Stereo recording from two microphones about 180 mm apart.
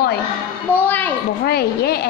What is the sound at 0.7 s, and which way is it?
Speech, 10° left (ahead or behind).